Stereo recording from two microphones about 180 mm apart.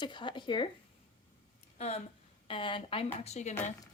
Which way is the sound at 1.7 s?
35° left (ahead or behind).